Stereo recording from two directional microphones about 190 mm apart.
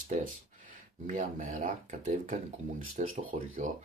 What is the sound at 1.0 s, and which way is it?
Speech, 40° right (ahead or behind).